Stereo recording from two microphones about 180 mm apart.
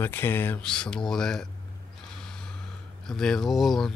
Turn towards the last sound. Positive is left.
turn(degrees=0)  # may be behind; listen again after turning